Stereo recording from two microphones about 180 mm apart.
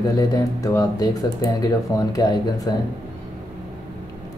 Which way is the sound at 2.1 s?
20° left (ahead or behind).